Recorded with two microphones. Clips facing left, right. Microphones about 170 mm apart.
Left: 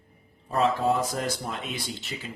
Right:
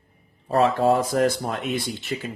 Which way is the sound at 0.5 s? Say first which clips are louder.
Right 5 dB; 75° right (ahead or behind).